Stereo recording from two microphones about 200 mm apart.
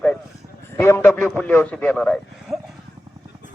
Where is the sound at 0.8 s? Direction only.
10° left (ahead or behind).